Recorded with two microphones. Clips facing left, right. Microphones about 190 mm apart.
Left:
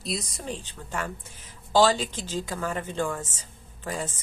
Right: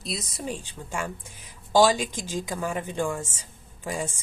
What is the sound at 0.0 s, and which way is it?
Speech, centre (ahead or behind).